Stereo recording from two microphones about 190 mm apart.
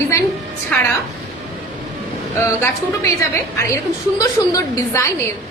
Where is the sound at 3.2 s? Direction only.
15° left (ahead or behind).